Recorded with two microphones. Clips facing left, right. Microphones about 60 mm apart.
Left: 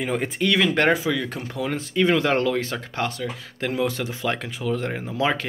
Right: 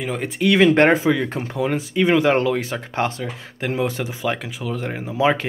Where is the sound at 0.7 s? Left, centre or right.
Right.